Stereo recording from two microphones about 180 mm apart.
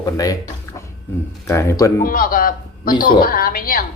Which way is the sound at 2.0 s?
50° left (ahead or behind).